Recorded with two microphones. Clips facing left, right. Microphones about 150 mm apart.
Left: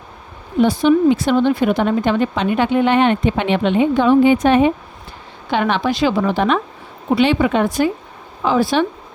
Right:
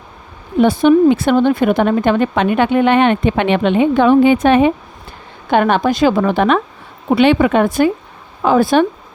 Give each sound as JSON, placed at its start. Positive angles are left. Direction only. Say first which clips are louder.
{"t": 0.6, "sound": "speech", "louder": "right 3 dB", "side_deg": -55}
{"t": 5.5, "sound": "speech", "louder": "right 4 dB", "side_deg": -50}